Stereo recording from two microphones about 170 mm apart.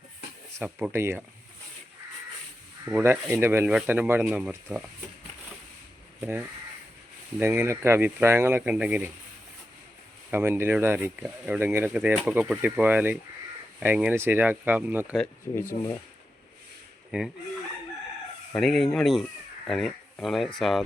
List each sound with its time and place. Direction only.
0.6 s speech: 10° right (ahead or behind)
2.8 s speech: 10° right (ahead or behind)
6.1 s speech: 10° right (ahead or behind)
10.3 s speech: 15° right (ahead or behind)
15.5 s speech: 20° left (ahead or behind)
17.1 s speech: 5° right (ahead or behind)
18.5 s speech: centre (ahead or behind)